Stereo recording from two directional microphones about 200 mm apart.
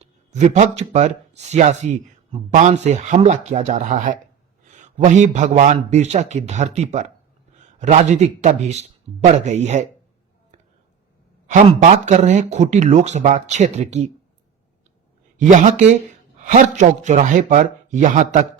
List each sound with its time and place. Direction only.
0.0 s a man's voice: 35° right (ahead or behind)
11.4 s speech: 40° right (ahead or behind)
15.4 s speech: 40° right (ahead or behind)